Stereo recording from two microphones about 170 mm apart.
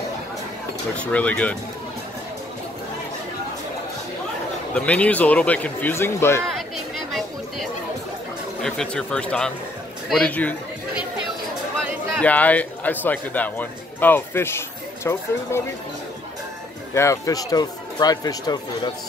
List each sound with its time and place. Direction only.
0.9 s a man's voice: 10° left (ahead or behind)
4.7 s a man's voice: 10° left (ahead or behind)
7.1 s a sound: centre (ahead or behind)
8.6 s speech: 5° left (ahead or behind)
12.2 s a man's voice: 10° left (ahead or behind)
16.9 s speech: 15° left (ahead or behind)